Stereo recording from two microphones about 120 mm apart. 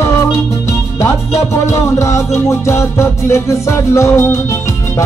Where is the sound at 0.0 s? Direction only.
25° left (ahead or behind).